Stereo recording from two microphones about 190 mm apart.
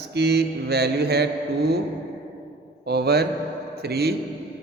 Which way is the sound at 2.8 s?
60° right (ahead or behind).